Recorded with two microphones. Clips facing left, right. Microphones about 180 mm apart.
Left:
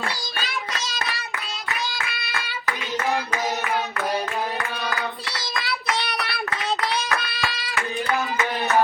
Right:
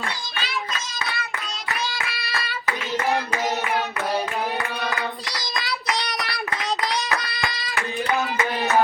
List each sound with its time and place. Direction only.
0.0 s child singing: 45° left (ahead or behind)
1.9 s child singing: centre (ahead or behind)
5.5 s child singing: centre (ahead or behind)
6.9 s hands: 15° right (ahead or behind)